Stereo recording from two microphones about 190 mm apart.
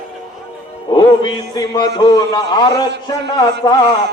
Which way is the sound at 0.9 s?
25° left (ahead or behind).